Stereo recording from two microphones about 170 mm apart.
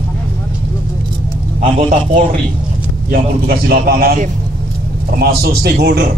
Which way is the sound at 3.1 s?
60° right (ahead or behind).